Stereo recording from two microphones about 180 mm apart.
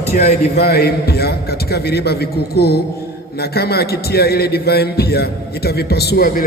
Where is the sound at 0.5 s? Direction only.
60° left (ahead or behind).